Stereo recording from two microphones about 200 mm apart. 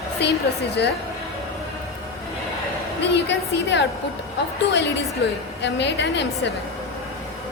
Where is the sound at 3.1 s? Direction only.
60° left (ahead or behind).